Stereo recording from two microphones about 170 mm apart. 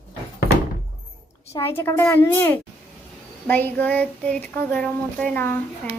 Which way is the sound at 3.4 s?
10° left (ahead or behind).